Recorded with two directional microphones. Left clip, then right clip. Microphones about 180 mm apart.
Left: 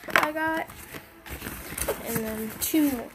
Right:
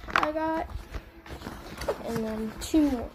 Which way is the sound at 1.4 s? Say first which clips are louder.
Left 1 dB; 50° left (ahead or behind).